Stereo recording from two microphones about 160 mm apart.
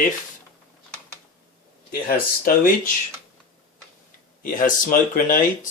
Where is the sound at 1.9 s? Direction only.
65° left (ahead or behind).